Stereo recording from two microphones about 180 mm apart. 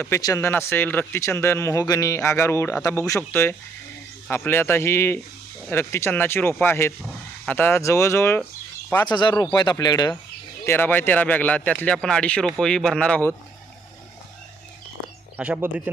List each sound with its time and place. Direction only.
0.0 s speech: 20° left (ahead or behind)
10.7 s speech: 10° left (ahead or behind)
15.4 s speech: 10° right (ahead or behind)